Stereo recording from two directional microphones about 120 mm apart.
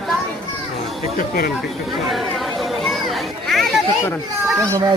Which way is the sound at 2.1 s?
Centre (ahead or behind).